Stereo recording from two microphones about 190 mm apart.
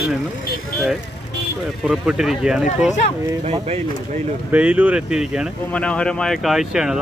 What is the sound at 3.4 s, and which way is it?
Speech, 35° right (ahead or behind).